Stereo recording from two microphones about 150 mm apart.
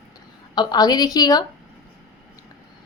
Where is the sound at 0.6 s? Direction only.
25° left (ahead or behind).